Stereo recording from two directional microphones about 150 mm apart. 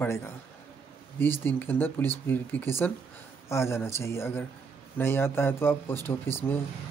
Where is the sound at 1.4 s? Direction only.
15° left (ahead or behind).